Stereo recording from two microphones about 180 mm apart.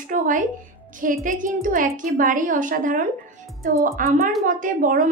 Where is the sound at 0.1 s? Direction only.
45° right (ahead or behind).